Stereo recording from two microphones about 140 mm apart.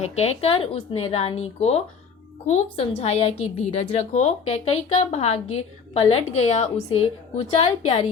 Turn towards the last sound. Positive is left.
turn(degrees=45)  # may be behind; listen again after turning